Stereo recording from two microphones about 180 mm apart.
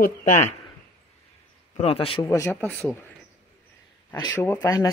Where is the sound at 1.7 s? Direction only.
30° left (ahead or behind).